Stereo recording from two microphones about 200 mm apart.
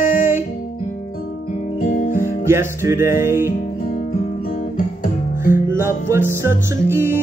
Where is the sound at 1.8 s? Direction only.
40° left (ahead or behind).